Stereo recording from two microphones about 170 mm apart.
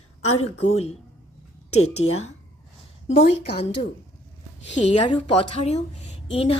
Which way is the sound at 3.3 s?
80° left.